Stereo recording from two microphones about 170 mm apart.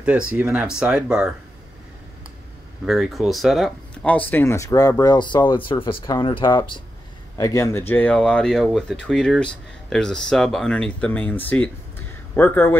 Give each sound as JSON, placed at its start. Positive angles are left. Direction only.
{"t": 0.0, "sound": "speech", "side_deg": -10}
{"t": 2.8, "sound": "speech", "side_deg": 0}
{"t": 7.3, "sound": "speech", "side_deg": 20}